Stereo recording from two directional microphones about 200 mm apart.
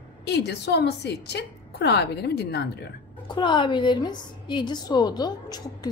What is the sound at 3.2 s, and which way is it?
A woman's voice, 25° left (ahead or behind).